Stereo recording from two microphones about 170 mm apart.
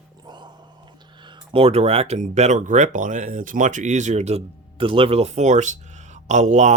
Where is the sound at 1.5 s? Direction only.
35° right (ahead or behind).